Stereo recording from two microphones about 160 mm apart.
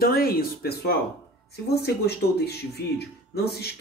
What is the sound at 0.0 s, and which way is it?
Speech, 70° left (ahead or behind).